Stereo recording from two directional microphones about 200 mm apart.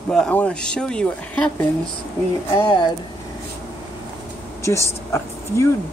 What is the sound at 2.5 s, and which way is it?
Speech, 20° left (ahead or behind).